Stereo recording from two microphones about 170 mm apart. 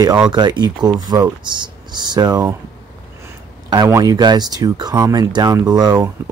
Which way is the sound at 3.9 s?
20° right (ahead or behind).